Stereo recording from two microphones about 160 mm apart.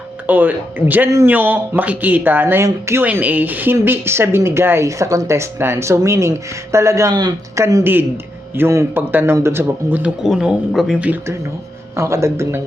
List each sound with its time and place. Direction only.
0.3 s speech: 10° right (ahead or behind)